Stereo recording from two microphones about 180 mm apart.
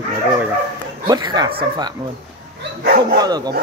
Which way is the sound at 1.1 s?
25° right (ahead or behind).